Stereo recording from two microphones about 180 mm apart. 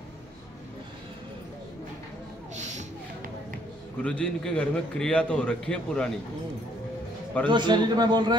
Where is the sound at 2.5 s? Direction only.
40° right (ahead or behind).